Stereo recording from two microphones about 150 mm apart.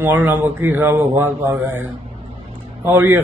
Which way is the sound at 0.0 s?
15° right (ahead or behind).